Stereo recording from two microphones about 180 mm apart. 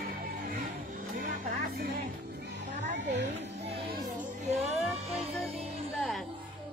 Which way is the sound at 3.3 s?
40° right (ahead or behind).